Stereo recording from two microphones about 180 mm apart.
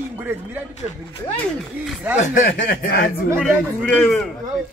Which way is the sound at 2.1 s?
45° left (ahead or behind).